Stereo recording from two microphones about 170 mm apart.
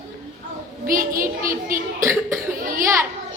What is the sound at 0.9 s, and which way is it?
Speech, 55° right (ahead or behind).